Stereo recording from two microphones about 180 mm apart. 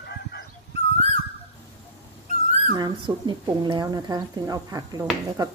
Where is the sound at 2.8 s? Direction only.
25° right (ahead or behind).